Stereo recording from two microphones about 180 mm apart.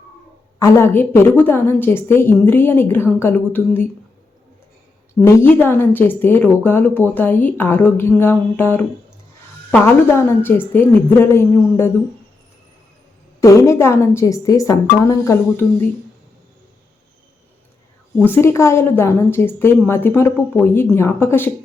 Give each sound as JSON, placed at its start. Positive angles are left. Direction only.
{"t": 0.6, "sound": "a woman's voice", "side_deg": 15}
{"t": 5.2, "sound": "a woman's voice", "side_deg": 10}
{"t": 9.8, "sound": "a woman's voice", "side_deg": 10}
{"t": 13.4, "sound": "a woman's voice", "side_deg": 15}
{"t": 18.3, "sound": "a woman's voice", "side_deg": 15}